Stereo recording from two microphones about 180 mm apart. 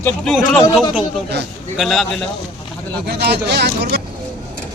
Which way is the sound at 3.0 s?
65° right (ahead or behind).